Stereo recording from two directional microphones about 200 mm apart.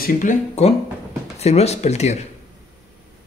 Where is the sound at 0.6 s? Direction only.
35° left (ahead or behind).